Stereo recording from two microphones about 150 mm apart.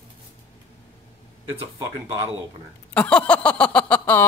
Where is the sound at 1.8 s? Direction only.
25° right (ahead or behind).